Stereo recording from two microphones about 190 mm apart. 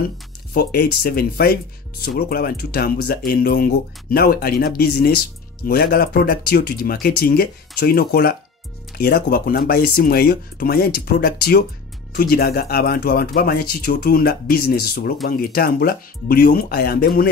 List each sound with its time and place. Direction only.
0.5 s speech: 55° left (ahead or behind)